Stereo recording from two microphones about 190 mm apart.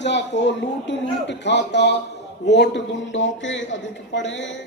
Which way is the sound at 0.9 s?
70° left (ahead or behind).